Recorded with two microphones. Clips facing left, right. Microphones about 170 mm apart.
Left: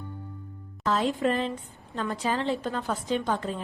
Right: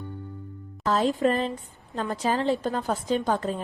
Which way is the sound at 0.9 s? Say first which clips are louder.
Right 3 dB; 40° right (ahead or behind).